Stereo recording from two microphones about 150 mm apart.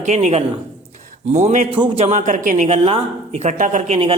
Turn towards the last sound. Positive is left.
turn(degrees=-50)  # may be behind; listen again after turning